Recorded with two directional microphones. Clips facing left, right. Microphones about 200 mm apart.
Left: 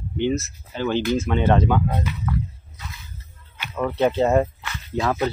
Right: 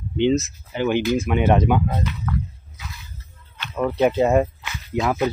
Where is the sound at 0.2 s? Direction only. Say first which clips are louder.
Right 4 dB; 20° right (ahead or behind).